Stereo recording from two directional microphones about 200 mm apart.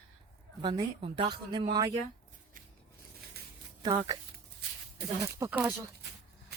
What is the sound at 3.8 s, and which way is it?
Speech, 20° right (ahead or behind).